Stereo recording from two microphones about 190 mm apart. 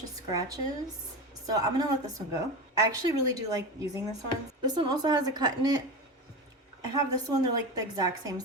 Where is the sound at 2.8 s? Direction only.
20° right (ahead or behind).